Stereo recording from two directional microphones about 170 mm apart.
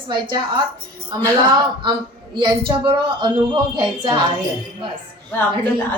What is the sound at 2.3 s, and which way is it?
A woman's voice, 30° right (ahead or behind).